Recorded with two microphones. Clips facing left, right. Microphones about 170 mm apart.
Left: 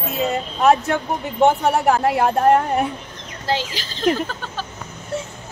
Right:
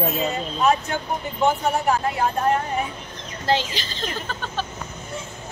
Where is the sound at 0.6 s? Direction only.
65° left (ahead or behind).